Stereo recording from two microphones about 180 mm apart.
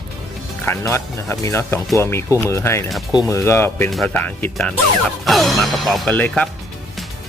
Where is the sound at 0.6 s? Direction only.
15° left (ahead or behind).